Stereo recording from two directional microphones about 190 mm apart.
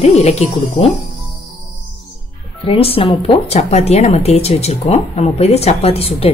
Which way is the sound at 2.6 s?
30° left (ahead or behind).